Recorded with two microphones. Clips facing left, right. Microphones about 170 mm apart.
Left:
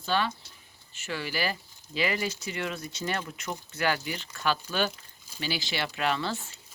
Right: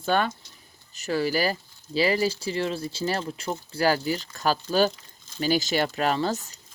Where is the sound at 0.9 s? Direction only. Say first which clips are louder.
Right 9 dB; 40° right (ahead or behind).